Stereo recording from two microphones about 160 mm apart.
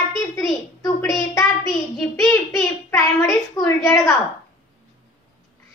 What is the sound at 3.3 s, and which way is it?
Speech, 20° left (ahead or behind).